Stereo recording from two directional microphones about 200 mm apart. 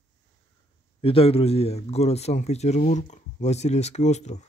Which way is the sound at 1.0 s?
30° left (ahead or behind).